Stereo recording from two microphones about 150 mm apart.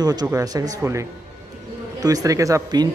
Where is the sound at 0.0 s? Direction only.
25° right (ahead or behind).